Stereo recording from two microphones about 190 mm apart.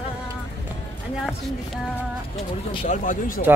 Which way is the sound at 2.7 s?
35° left (ahead or behind).